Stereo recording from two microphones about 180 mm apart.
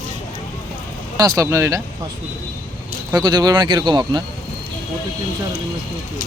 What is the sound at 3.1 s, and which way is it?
Speech, 25° right (ahead or behind).